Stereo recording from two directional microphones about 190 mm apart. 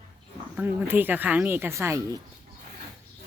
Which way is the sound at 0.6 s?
10° right (ahead or behind).